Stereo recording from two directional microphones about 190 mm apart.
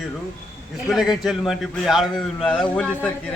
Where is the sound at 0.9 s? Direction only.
Centre (ahead or behind).